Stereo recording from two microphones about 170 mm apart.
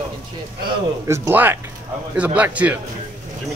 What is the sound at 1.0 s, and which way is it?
A man's voice, 15° right (ahead or behind).